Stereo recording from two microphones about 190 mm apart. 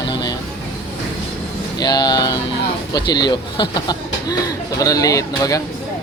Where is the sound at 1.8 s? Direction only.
20° left (ahead or behind).